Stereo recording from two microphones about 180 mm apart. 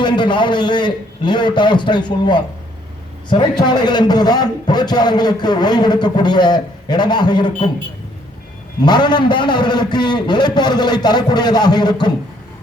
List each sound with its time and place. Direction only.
0.0 s a man's voice: 25° left (ahead or behind)
3.7 s a man's voice: 25° left (ahead or behind)
8.8 s a man's voice: 25° left (ahead or behind)